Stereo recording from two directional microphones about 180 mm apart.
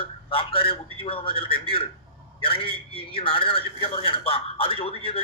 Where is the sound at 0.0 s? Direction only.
30° left (ahead or behind).